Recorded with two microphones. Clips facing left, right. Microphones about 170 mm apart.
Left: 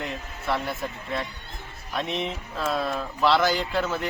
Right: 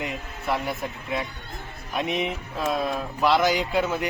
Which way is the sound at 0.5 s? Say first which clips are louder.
Right 1 dB; 15° right (ahead or behind).